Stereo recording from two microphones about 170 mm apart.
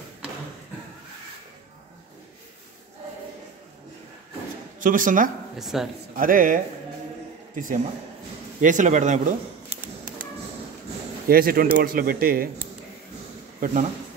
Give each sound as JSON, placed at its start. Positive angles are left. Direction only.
{"t": 4.7, "sound": "a man's voice", "side_deg": -50}
{"t": 5.6, "sound": "a man's voice", "side_deg": 0}
{"t": 6.1, "sound": "a man's voice", "side_deg": -55}
{"t": 11.2, "sound": "a man's voice", "side_deg": -60}